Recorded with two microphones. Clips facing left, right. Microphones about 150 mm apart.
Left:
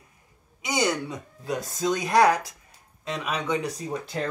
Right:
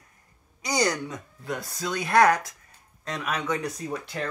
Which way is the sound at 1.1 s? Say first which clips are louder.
Left 3 dB; 15° left (ahead or behind).